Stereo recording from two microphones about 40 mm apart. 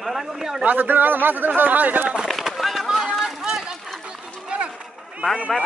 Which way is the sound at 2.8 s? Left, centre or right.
Centre.